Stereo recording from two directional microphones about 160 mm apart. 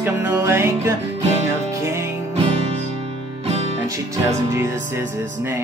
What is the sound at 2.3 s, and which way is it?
Music, 35° right (ahead or behind).